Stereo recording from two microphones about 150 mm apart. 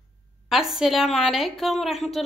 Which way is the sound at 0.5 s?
Centre (ahead or behind).